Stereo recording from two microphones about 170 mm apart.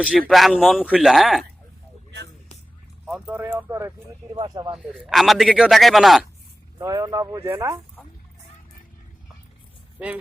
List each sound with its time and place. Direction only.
0.0 s a man's voice: centre (ahead or behind)
3.1 s speech: 5° right (ahead or behind); by 4.7 s 20° right (ahead or behind)
4.7 s a man's voice: centre (ahead or behind)
6.7 s speech: 20° right (ahead or behind)